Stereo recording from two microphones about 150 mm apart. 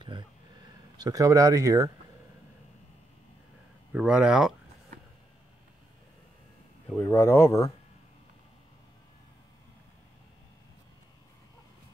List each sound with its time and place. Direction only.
0.0 s a sound: 30° right (ahead or behind)
3.9 s speech: 5° right (ahead or behind)
6.9 s speech: 15° left (ahead or behind)